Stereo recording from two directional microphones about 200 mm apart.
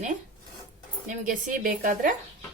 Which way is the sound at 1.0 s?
40° right (ahead or behind).